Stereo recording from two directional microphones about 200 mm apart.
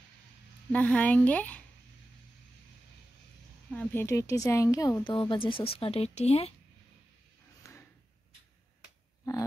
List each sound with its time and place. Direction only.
0.7 s speech: 5° left (ahead or behind)
3.7 s speech: 10° left (ahead or behind); by 6.5 s 30° left (ahead or behind)
7.7 s drawer open or close: 15° left (ahead or behind)